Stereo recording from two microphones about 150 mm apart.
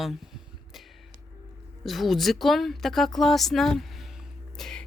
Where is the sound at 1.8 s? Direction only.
Centre (ahead or behind).